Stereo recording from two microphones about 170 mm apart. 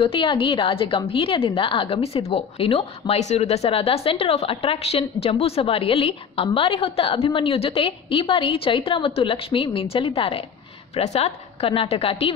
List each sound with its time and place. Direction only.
0.0 s a woman's voice: 30° left (ahead or behind)